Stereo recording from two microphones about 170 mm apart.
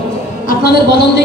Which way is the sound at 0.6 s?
65° left (ahead or behind).